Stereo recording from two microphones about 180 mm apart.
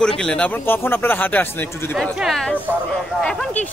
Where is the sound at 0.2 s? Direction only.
5° left (ahead or behind).